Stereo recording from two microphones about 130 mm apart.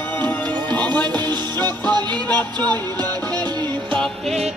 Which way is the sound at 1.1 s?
35° right (ahead or behind).